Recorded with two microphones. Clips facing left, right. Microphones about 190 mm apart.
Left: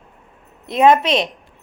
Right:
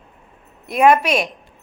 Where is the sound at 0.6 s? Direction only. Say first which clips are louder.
Left 1 dB; 20° left (ahead or behind).